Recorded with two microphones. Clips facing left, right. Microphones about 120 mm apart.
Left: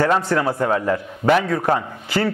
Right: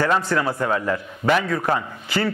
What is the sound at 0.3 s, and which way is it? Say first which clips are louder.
A man's voice: left 2 dB; 40° left (ahead or behind).